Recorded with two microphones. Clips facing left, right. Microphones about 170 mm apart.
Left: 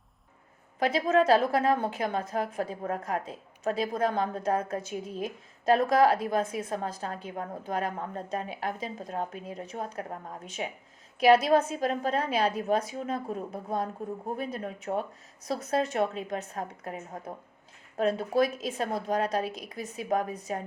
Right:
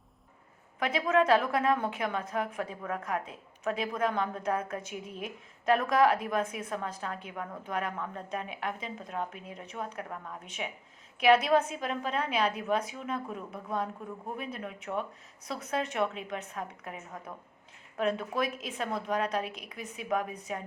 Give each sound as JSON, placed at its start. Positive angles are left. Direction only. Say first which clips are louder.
{"t": 0.8, "sound": "a woman's voice", "louder": "left 3 dB", "side_deg": 35}